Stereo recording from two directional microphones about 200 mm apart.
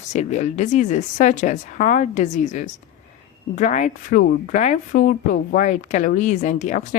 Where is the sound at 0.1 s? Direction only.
35° left (ahead or behind).